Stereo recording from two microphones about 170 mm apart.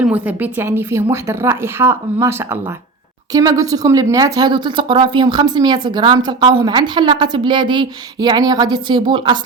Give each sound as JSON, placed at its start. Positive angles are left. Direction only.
{"t": 0.0, "sound": "a woman's voice", "side_deg": -10}